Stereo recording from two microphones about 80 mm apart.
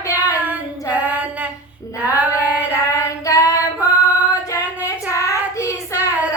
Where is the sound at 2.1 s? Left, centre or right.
Centre.